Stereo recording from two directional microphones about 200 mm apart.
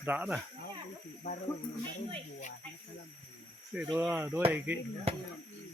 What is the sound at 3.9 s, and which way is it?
Speech, 10° right (ahead or behind).